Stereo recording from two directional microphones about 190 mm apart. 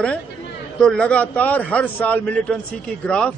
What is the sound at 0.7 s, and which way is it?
A man's voice, 5° left (ahead or behind).